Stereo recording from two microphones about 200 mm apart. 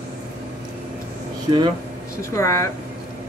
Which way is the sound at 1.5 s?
20° right (ahead or behind).